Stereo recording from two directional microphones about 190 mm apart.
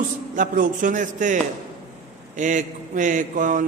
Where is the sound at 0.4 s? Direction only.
45° right (ahead or behind).